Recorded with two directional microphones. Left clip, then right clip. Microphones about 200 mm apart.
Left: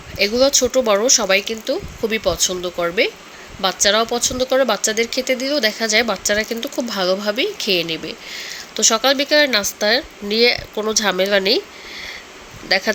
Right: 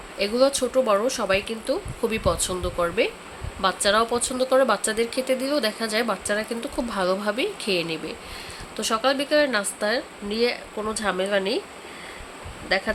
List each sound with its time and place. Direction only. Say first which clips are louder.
0.2 s speech: left 6 dB; 15° left (ahead or behind)
12.6 s speech: left 6 dB; 20° left (ahead or behind)